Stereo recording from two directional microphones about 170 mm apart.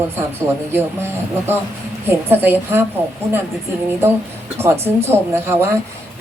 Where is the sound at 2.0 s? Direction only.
15° right (ahead or behind).